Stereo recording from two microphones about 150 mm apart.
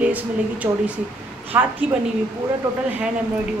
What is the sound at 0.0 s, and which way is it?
Speech, 10° right (ahead or behind).